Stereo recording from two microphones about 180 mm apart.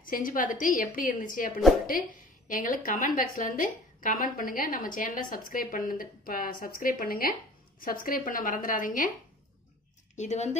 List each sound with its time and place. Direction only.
0.0 s a woman's voice: 50° left (ahead or behind)
10.1 s a woman's voice: 40° left (ahead or behind)